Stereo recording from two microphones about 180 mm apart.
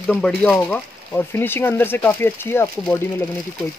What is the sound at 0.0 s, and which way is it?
Speech, 5° left (ahead or behind).